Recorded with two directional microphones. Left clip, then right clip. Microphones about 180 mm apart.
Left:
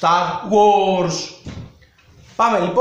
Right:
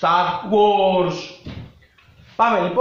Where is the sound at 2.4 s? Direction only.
15° left (ahead or behind).